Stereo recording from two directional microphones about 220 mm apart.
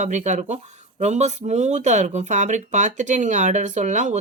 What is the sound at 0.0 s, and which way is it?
Speech, 35° right (ahead or behind).